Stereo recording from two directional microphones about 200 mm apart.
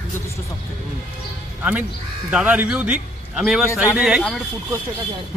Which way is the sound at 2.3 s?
5° right (ahead or behind).